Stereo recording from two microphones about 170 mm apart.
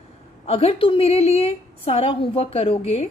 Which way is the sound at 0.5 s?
35° left (ahead or behind).